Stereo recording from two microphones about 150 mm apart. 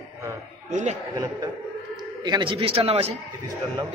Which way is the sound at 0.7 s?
55° right (ahead or behind).